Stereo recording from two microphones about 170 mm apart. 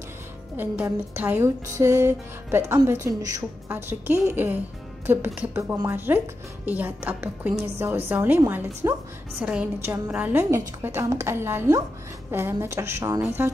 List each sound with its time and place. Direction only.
0.6 s speech: 10° right (ahead or behind)